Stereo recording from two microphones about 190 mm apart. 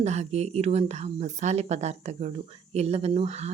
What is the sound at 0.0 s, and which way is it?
A woman's voice, 35° right (ahead or behind).